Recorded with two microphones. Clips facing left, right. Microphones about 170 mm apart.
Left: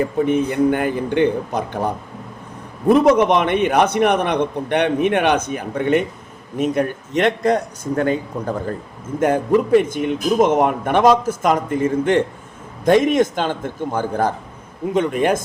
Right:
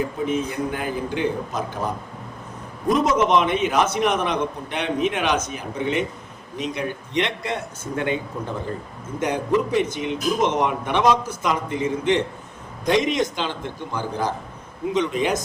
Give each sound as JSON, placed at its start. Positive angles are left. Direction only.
{"t": 0.0, "sound": "a man's voice", "side_deg": 60}
{"t": 2.9, "sound": "a man's voice", "side_deg": 60}
{"t": 9.2, "sound": "speech", "side_deg": 50}